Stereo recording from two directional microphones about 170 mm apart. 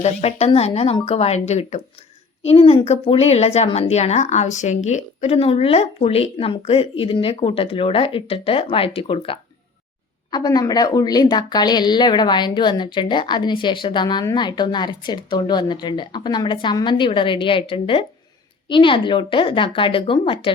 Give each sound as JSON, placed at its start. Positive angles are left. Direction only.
{"t": 0.0, "sound": "speech", "side_deg": 40}